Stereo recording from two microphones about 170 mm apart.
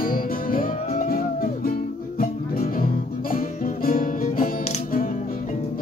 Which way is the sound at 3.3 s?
55° left (ahead or behind).